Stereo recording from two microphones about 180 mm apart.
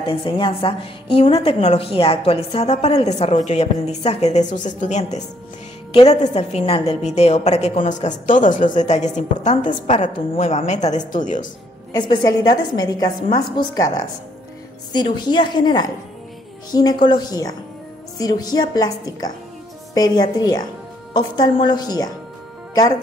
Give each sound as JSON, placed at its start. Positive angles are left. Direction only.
{"t": 0.0, "sound": "a woman's voice", "side_deg": 30}
{"t": 11.9, "sound": "a woman's voice", "side_deg": 20}